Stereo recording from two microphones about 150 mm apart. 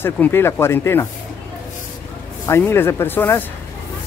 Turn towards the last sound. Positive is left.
turn(degrees=15)  # may be behind; listen again after turning